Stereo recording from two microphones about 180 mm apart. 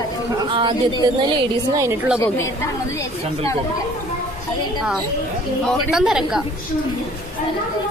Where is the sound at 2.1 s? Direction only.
15° left (ahead or behind).